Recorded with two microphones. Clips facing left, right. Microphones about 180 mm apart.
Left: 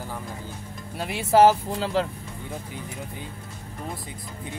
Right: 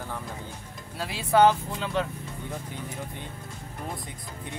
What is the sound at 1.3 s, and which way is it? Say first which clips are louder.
Speech: left 3 dB; 35° left (ahead or behind).